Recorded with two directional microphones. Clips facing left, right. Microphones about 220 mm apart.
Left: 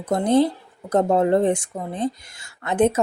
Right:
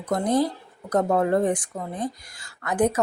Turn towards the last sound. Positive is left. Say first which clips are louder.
# left 3 dB
turn(degrees=25)  # may be behind; listen again after turning